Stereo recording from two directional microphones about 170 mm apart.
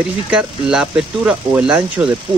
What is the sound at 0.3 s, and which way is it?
Speech, 5° right (ahead or behind).